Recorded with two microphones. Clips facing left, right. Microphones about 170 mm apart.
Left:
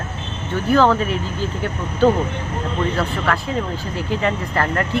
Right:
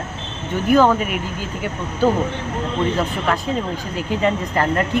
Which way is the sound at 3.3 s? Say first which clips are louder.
Right 1 dB; 20° right (ahead or behind).